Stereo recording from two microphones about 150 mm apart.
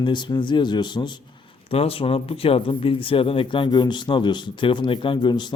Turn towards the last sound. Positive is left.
turn(degrees=30)  # may be behind; listen again after turning